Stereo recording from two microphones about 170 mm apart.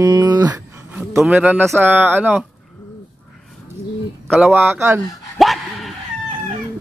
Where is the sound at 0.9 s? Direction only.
10° right (ahead or behind).